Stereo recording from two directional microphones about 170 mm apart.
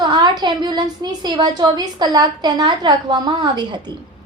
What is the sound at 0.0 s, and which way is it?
A woman's voice, 25° right (ahead or behind).